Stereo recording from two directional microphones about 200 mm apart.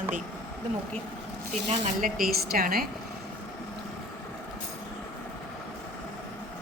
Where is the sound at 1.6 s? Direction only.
35° right (ahead or behind).